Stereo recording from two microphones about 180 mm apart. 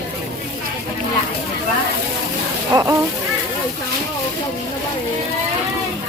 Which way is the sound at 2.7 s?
15° right (ahead or behind).